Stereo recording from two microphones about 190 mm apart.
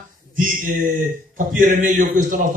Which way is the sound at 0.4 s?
45° right (ahead or behind).